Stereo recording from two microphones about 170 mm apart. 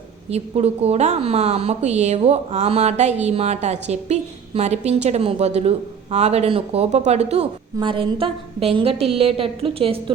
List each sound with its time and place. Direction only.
0.3 s a woman's voice: 40° right (ahead or behind)